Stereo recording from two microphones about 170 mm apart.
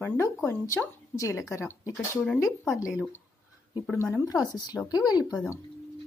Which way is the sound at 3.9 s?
15° left (ahead or behind).